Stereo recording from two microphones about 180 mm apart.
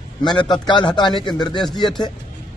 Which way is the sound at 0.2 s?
25° left (ahead or behind).